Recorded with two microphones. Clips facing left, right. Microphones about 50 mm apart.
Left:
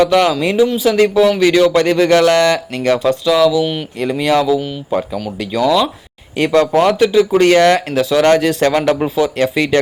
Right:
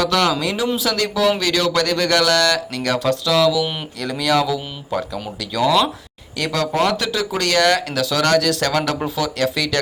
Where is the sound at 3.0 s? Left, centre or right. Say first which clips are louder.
Left 3 dB; centre.